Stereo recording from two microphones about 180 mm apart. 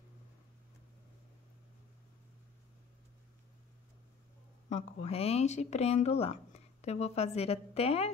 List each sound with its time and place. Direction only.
5.0 s speech: 35° left (ahead or behind)